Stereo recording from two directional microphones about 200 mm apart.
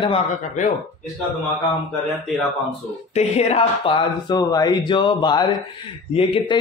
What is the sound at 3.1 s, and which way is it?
Speech, 30° left (ahead or behind).